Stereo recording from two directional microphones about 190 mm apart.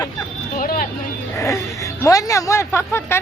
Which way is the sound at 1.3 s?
15° left (ahead or behind).